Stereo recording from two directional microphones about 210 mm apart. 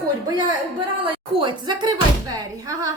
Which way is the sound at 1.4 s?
20° right (ahead or behind).